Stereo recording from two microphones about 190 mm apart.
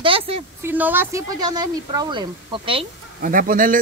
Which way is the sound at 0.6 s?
10° right (ahead or behind).